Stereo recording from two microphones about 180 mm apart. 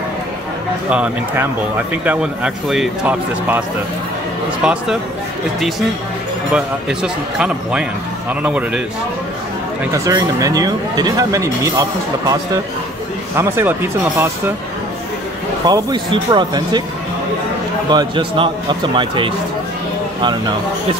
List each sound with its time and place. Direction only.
0.8 s speech: 5° right (ahead or behind)
6.5 s speech: 5° right (ahead or behind)
10.0 s speech: 20° right (ahead or behind)
13.4 s speech: 10° right (ahead or behind)
15.6 s speech: 25° right (ahead or behind)
17.8 s speech: 25° right (ahead or behind)